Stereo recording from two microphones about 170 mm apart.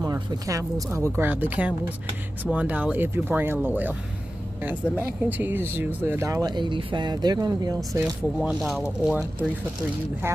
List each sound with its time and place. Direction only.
0.0 s a woman's voice: 20° right (ahead or behind)
4.9 s speech: 10° right (ahead or behind)
8.0 s a woman's voice: 5° right (ahead or behind)